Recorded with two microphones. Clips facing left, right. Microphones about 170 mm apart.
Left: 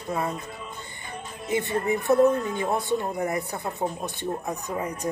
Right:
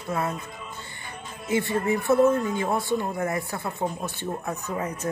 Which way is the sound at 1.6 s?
20° left (ahead or behind).